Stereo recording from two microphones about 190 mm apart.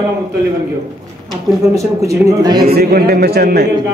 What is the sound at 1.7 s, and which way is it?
Speech, 15° right (ahead or behind).